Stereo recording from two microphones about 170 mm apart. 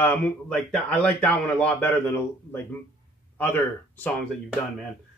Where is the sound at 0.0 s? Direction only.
10° left (ahead or behind).